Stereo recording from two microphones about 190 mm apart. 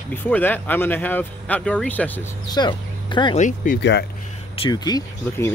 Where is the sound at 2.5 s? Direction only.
25° left (ahead or behind).